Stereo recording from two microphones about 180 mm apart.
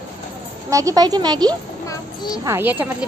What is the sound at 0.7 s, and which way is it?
A woman's voice, 20° right (ahead or behind).